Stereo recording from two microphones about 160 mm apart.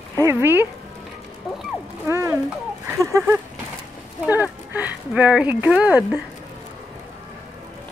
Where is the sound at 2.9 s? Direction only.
20° right (ahead or behind).